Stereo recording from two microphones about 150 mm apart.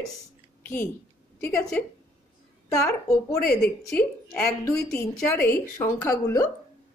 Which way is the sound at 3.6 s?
5° left (ahead or behind).